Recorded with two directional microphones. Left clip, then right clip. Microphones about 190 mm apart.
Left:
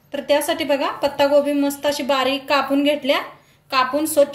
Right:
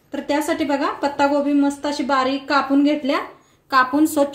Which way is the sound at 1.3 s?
30° right (ahead or behind).